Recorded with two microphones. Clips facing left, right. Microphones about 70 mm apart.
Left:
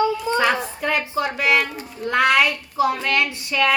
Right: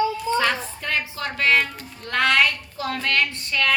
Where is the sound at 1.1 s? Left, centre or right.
Centre.